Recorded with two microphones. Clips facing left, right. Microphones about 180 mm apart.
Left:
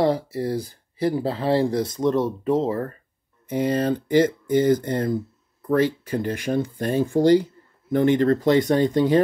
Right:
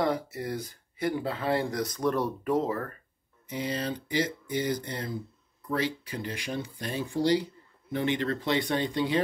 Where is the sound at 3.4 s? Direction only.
50° left (ahead or behind).